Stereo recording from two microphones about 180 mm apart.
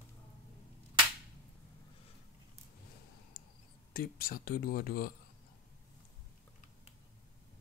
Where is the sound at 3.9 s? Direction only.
50° left (ahead or behind).